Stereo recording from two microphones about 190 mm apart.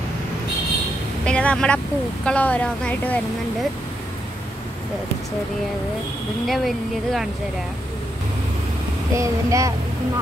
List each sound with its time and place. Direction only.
1.2 s vehicle: 5° left (ahead or behind)
2.2 s a woman's voice: 5° left (ahead or behind)
6.4 s speech: centre (ahead or behind)
9.1 s speech: 15° right (ahead or behind)